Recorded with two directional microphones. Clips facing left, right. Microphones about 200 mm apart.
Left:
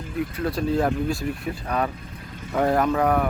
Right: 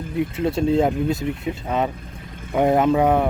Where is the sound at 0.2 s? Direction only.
25° right (ahead or behind).